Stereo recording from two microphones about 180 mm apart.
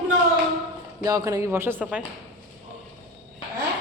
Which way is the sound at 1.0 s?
20° right (ahead or behind).